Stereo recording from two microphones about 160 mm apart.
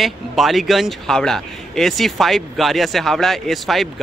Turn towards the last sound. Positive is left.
turn(degrees=0)  # may be behind; listen again after turning